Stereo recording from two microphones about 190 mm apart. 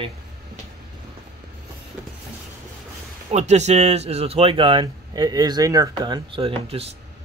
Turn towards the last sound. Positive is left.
turn(degrees=-30)  # may be behind; listen again after turning